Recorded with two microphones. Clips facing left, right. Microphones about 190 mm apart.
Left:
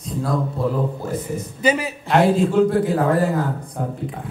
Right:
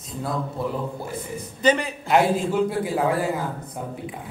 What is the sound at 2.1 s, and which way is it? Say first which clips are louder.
Speech: left 2 dB; 5° right (ahead or behind).